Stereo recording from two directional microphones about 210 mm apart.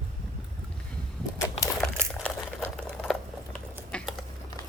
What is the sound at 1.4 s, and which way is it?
Typewriter, 15° left (ahead or behind).